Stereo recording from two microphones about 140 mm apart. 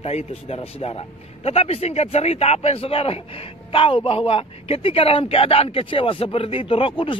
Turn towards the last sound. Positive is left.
turn(degrees=40)  # may be behind; listen again after turning